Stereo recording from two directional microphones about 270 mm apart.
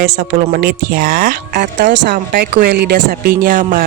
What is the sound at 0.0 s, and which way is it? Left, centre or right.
Speech, right.